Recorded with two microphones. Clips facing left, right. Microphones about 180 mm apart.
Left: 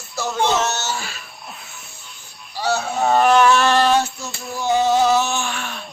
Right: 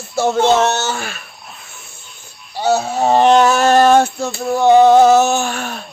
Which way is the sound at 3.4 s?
45° right (ahead or behind).